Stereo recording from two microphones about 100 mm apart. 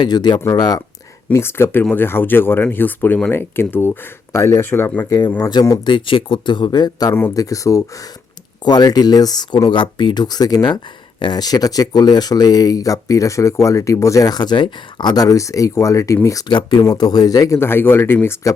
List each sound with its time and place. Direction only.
0.0 s speech: 45° left (ahead or behind)
1.3 s speech: 25° left (ahead or behind)
5.5 s speech: 40° left (ahead or behind)
5.9 s speech: 55° left (ahead or behind)
7.1 s speech: 25° left (ahead or behind)
16.5 s speech: 50° left (ahead or behind)
17.6 s speech: 25° left (ahead or behind)